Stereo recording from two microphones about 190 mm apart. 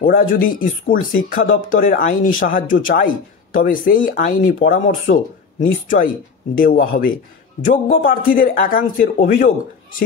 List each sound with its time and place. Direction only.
0.0 s speech: 45° left (ahead or behind)
6.5 s speech: 50° left (ahead or behind)